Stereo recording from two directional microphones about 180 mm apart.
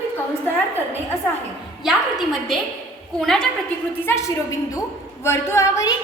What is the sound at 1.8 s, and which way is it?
A woman's voice, centre (ahead or behind).